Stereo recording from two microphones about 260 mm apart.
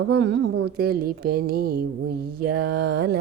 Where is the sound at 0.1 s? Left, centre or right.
Right.